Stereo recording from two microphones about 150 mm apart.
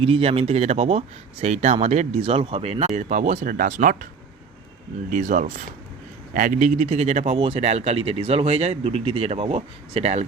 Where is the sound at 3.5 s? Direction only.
65° right (ahead or behind).